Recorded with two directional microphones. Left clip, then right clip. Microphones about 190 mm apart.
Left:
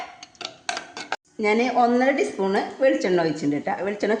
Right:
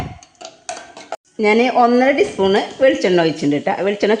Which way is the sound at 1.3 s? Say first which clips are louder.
Right 7 dB; 50° right (ahead or behind).